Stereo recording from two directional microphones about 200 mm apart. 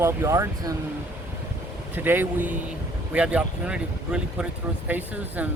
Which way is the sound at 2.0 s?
10° right (ahead or behind).